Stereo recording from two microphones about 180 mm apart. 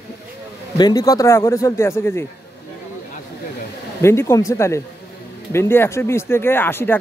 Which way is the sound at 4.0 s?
15° left (ahead or behind).